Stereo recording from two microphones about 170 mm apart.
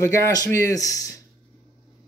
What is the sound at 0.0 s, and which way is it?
A man's voice, 15° left (ahead or behind).